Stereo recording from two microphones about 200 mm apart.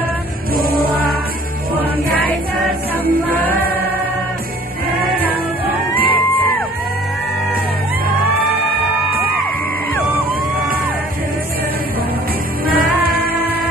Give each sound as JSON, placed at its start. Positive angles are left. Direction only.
{"t": 0.6, "sound": "music", "side_deg": -45}
{"t": 6.0, "sound": "music", "side_deg": 10}
{"t": 12.7, "sound": "music", "side_deg": -50}